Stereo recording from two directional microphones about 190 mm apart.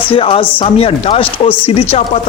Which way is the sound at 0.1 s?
25° left (ahead or behind).